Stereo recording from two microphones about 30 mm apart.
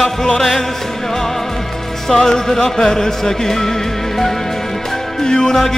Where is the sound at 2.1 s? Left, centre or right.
Centre.